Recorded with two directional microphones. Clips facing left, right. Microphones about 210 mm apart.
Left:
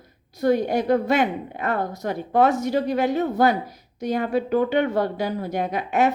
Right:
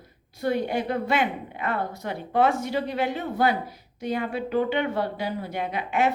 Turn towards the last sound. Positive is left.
turn(degrees=40)  # may be behind; listen again after turning